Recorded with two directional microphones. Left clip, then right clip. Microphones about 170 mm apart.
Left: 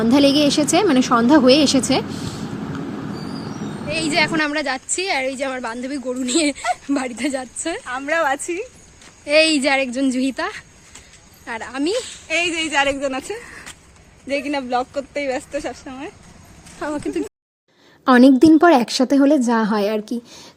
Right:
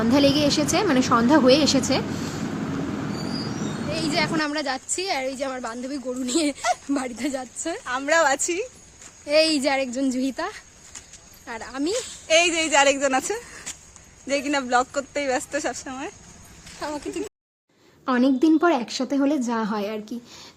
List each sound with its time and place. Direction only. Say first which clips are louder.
0.1 s a woman's voice: left 4 dB; 25° left (ahead or behind)
3.8 s a woman's voice: left 6 dB; 10° right (ahead or behind)
7.9 s a woman's voice: even; 90° right; by 8.6 s 70° right (ahead or behind)
9.2 s a woman's voice: left 4 dB; 10° right (ahead or behind)
12.3 s a woman's voice: right 1 dB; 90° right
13.0 s speech: right 1 dB; 30° right (ahead or behind)
16.8 s a woman's voice: left 6 dB; 55° left (ahead or behind); by 20.5 s 35° left (ahead or behind)